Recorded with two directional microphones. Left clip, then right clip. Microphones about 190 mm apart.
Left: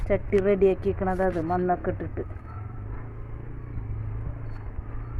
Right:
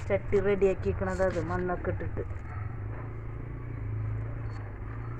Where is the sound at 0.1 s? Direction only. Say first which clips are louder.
Left 4 dB; 60° left (ahead or behind).